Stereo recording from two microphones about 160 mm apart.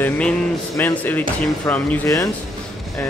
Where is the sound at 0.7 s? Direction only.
10° left (ahead or behind).